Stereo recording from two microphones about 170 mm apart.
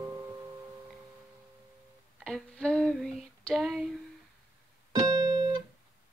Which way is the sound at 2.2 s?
5° left (ahead or behind).